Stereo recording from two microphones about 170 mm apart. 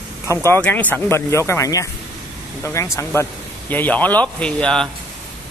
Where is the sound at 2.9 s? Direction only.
15° left (ahead or behind).